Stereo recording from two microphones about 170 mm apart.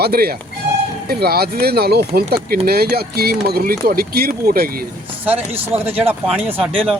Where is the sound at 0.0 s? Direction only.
65° right (ahead or behind).